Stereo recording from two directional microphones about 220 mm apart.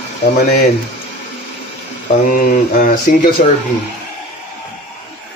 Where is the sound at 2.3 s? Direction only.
35° left (ahead or behind).